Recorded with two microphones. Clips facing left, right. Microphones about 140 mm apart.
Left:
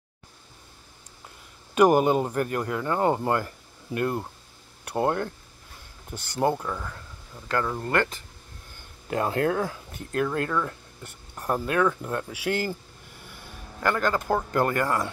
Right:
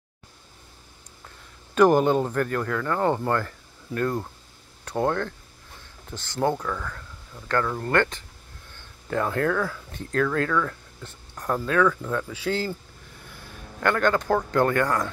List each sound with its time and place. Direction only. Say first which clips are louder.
1.8 s speech: right 1 dB; 10° left (ahead or behind)
6.6 s speech: right 2 dB; 20° left (ahead or behind)
9.0 s speech: even; 20° left (ahead or behind)
9.9 s speech: right 2 dB; 15° left (ahead or behind)
13.2 s speech: right 1 dB; centre (ahead or behind)